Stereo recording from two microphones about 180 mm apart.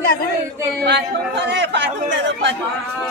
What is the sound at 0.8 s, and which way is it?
A man's voice, 70° right (ahead or behind).